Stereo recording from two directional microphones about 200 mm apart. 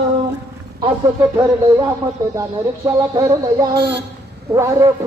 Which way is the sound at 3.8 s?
55° right (ahead or behind).